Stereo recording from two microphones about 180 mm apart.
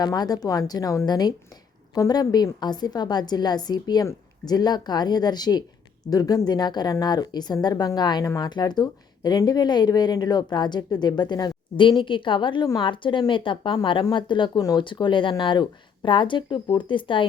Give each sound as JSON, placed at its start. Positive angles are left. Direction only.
{"t": 0.0, "sound": "speech", "side_deg": 20}